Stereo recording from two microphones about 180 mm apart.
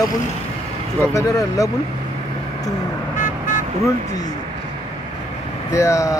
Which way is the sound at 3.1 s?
45° left (ahead or behind).